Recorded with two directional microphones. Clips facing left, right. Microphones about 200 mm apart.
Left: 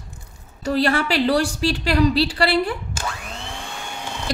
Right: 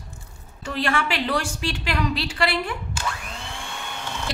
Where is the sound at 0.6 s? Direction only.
35° left (ahead or behind).